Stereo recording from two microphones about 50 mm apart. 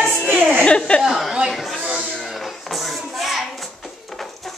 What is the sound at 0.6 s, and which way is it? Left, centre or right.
Speech, left.